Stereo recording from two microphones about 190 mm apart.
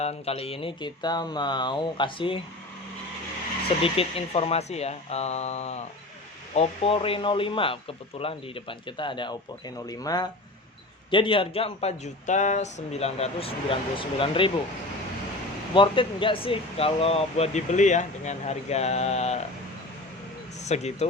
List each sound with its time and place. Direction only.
0.0 s a man's voice: 35° left (ahead or behind)
3.8 s a man's voice: 30° left (ahead or behind)
15.7 s speech: 25° left (ahead or behind)
20.7 s speech: 35° left (ahead or behind)